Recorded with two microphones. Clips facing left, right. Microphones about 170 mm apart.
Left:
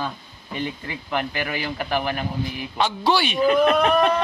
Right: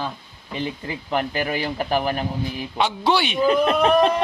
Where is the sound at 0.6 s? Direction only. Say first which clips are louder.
Right 1 dB; 30° right (ahead or behind).